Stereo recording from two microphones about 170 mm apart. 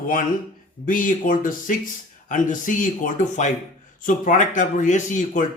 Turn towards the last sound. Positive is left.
turn(degrees=45)  # may be behind; listen again after turning